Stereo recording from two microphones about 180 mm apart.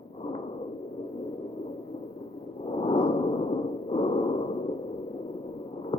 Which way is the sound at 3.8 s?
30° left (ahead or behind).